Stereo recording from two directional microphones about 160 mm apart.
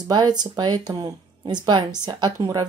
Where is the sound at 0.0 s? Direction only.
25° right (ahead or behind).